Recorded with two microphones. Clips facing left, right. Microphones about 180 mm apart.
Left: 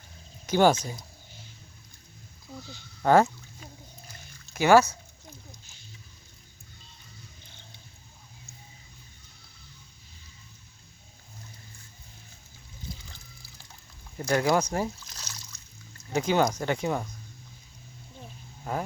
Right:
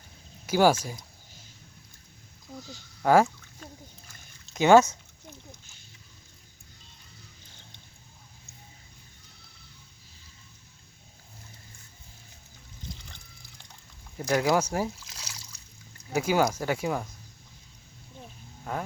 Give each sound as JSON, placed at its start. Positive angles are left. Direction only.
{"t": 0.4, "sound": "speech", "side_deg": -10}
{"t": 3.0, "sound": "speech", "side_deg": -5}
{"t": 3.6, "sound": "a sound", "side_deg": 10}
{"t": 4.5, "sound": "speech", "side_deg": -20}
{"t": 12.9, "sound": "water", "side_deg": 5}
{"t": 14.4, "sound": "speech", "side_deg": -10}
{"t": 18.7, "sound": "speech", "side_deg": 5}